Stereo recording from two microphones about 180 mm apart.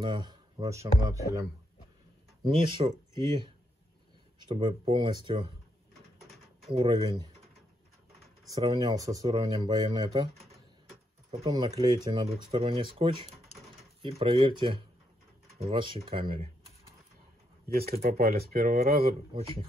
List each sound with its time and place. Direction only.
0.0 s a sound: 30° right (ahead or behind)
0.7 s speech: 15° right (ahead or behind)
2.4 s speech: 30° right (ahead or behind)
6.7 s speech: 30° right (ahead or behind)
8.6 s speech: 20° right (ahead or behind)
11.2 s speech: 35° right (ahead or behind)
11.5 s speech: 20° right (ahead or behind)
17.6 s speech: 60° right (ahead or behind)